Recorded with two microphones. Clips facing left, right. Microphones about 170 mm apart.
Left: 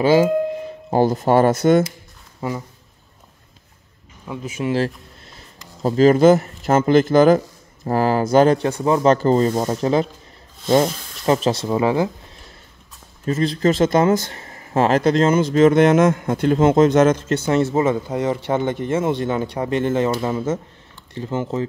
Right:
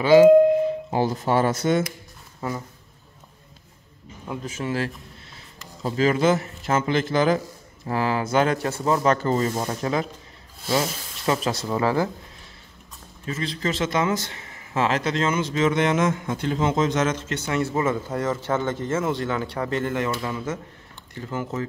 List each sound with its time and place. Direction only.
0.8 s speech: 40° left (ahead or behind)
4.3 s speech: 10° left (ahead or behind)
4.7 s speech: 35° left (ahead or behind)
8.5 s speech: 15° left (ahead or behind)
9.0 s speech: 30° left (ahead or behind)
11.2 s speech: 25° left (ahead or behind)
13.2 s speech: 40° left (ahead or behind)
15.6 s speech: 50° left (ahead or behind)
17.3 s speech: 35° left (ahead or behind)
17.6 s speech: 25° left (ahead or behind)
21.1 s speech: 25° left (ahead or behind)